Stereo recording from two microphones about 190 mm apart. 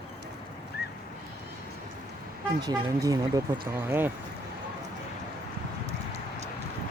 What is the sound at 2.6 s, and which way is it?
Speech, 20° right (ahead or behind).